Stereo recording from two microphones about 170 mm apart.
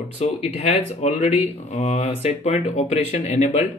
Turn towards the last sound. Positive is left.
turn(degrees=45)  # may be behind; listen again after turning